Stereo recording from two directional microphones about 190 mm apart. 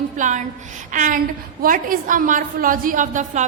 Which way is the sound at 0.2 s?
40° right (ahead or behind).